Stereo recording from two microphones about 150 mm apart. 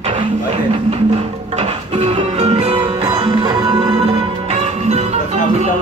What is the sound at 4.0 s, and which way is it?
Music, 45° right (ahead or behind).